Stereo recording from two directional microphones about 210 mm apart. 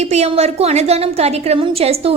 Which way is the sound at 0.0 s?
30° right (ahead or behind).